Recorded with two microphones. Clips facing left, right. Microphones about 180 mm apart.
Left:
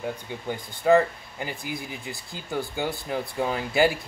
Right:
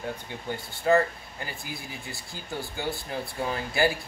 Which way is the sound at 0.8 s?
15° left (ahead or behind).